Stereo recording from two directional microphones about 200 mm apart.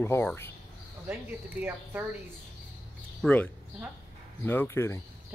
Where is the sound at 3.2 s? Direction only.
5° left (ahead or behind).